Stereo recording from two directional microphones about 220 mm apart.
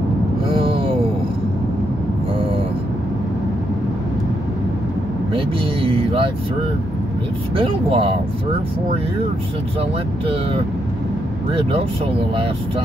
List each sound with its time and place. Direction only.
0.5 s a sound: 25° right (ahead or behind)
5.3 s vehicle: 25° right (ahead or behind)
7.5 s speech: 25° right (ahead or behind)
9.8 s speech: 25° right (ahead or behind)